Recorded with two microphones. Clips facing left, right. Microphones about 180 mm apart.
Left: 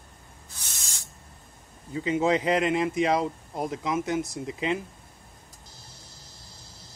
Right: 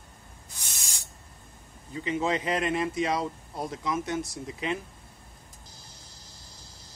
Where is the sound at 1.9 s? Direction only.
20° left (ahead or behind).